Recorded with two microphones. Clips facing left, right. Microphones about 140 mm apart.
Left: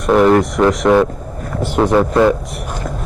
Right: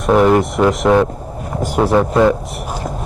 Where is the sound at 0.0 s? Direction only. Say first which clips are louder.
Left 1 dB; 5° right (ahead or behind).